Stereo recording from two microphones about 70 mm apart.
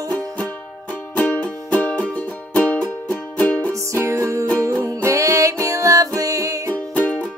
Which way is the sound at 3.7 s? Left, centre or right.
Right.